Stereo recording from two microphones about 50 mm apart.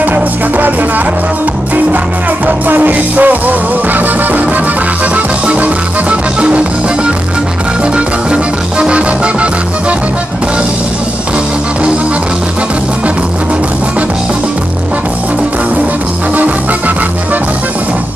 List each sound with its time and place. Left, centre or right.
0.0 s music: right
2.4 s music: right
7.8 s music: right
16.3 s music: right